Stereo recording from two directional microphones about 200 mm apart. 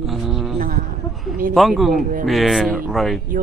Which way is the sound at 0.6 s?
45° right (ahead or behind).